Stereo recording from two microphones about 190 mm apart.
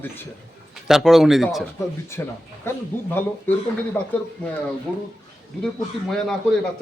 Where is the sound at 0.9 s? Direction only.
Centre (ahead or behind).